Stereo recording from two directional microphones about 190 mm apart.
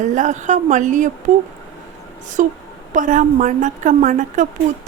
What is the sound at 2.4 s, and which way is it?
A woman's voice, 40° right (ahead or behind).